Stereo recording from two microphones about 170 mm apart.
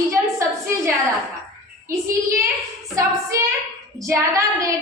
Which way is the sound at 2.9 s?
20° right (ahead or behind).